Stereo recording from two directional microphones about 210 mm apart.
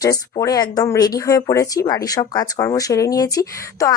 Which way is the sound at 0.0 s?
15° left (ahead or behind).